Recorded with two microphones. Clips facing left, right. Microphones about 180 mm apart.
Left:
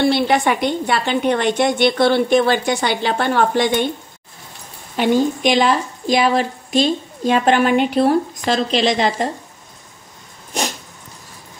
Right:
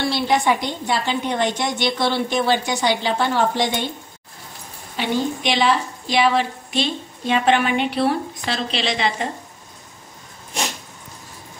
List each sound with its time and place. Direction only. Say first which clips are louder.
0.0 s a woman's voice: left 4 dB; 60° left (ahead or behind)
4.9 s a woman's voice: left 6 dB; 50° left (ahead or behind)